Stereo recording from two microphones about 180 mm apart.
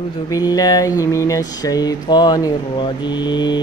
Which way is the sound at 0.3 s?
20° left (ahead or behind).